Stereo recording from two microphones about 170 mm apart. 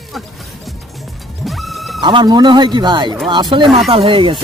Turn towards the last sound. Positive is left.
turn(degrees=-30)  # may be behind; listen again after turning